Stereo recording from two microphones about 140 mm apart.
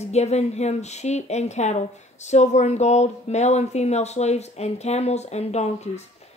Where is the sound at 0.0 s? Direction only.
50° left (ahead or behind).